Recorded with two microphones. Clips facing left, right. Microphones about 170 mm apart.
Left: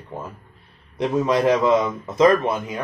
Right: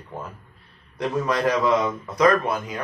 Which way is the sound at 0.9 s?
25° left (ahead or behind).